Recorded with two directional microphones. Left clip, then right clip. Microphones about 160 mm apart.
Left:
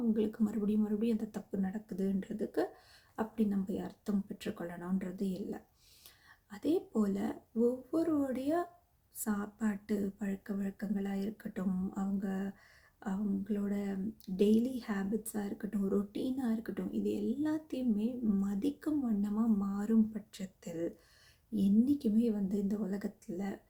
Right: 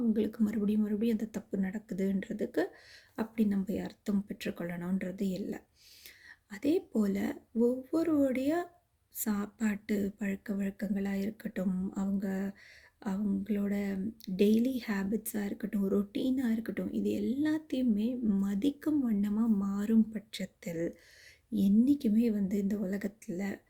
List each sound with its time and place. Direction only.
0.1 s speech: 25° right (ahead or behind)
1.5 s speech: 35° right (ahead or behind)